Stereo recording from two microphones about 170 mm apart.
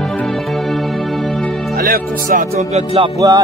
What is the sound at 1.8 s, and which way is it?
Speech, 55° right (ahead or behind).